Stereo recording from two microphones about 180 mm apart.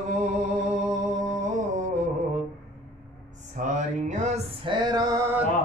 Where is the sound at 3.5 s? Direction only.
45° right (ahead or behind).